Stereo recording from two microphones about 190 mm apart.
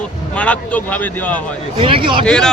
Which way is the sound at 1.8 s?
25° right (ahead or behind).